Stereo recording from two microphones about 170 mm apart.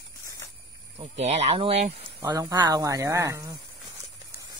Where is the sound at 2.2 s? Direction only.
20° right (ahead or behind).